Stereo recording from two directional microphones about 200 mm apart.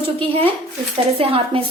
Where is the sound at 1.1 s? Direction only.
30° right (ahead or behind).